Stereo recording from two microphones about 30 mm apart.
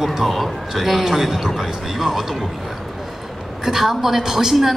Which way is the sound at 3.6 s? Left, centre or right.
Centre.